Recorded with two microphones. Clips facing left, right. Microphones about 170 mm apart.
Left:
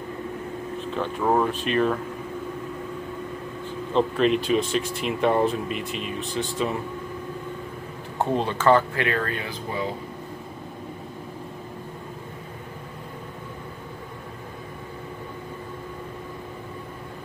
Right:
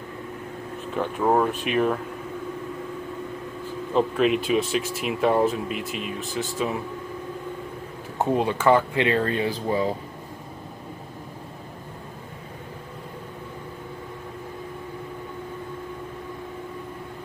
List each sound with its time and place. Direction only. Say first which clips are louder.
0.9 s speech: right 1 dB; 10° right (ahead or behind)
3.9 s speech: even; 5° right (ahead or behind)
8.2 s speech: right 1 dB; 10° right (ahead or behind)
8.9 s speech: right 4 dB; 25° right (ahead or behind)